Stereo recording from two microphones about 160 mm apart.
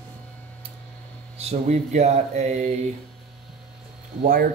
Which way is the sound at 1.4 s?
40° right (ahead or behind).